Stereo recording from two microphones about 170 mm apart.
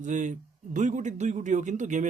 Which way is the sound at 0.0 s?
45° right (ahead or behind).